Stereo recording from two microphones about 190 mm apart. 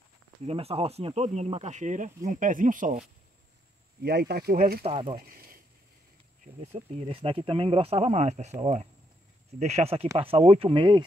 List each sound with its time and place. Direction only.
0.5 s speech: 30° right (ahead or behind)
4.0 s speech: 60° right (ahead or behind)
4.8 s speech: 25° right (ahead or behind)
5.2 s a sound: 50° right (ahead or behind)
6.4 s speech: 35° right (ahead or behind)